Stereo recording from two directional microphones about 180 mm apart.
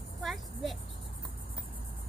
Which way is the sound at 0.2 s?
Centre (ahead or behind).